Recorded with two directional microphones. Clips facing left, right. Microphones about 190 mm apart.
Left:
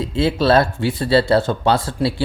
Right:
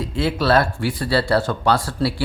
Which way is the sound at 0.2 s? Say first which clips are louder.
Left 3 dB; 25° left (ahead or behind).